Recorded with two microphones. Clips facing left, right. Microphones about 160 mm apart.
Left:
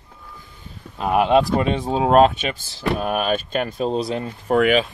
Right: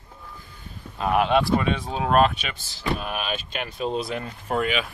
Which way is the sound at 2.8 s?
50° left (ahead or behind).